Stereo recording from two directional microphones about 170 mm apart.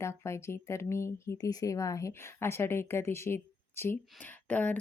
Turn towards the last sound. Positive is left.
turn(degrees=10)  # may be behind; listen again after turning